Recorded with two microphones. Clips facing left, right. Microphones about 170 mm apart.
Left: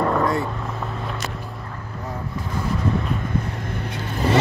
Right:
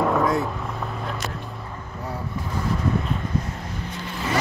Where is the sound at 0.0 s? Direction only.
Centre (ahead or behind).